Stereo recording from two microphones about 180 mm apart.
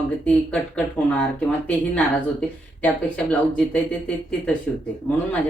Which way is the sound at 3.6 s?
5° left (ahead or behind).